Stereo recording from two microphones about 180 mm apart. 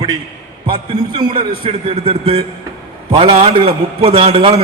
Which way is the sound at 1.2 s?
25° right (ahead or behind).